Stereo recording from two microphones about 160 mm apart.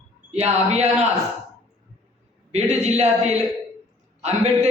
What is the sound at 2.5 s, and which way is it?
Speech, 45° right (ahead or behind).